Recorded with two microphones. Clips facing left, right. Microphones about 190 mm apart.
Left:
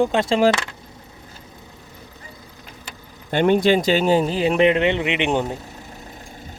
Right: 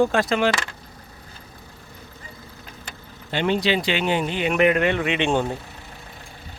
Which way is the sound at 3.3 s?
50° left (ahead or behind).